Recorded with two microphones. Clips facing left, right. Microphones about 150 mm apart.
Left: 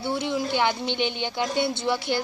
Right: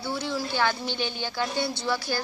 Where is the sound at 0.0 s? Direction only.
20° left (ahead or behind).